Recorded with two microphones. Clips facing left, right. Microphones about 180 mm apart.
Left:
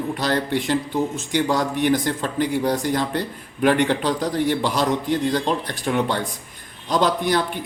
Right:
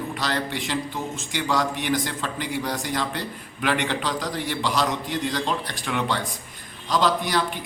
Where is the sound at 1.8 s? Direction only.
45° left (ahead or behind).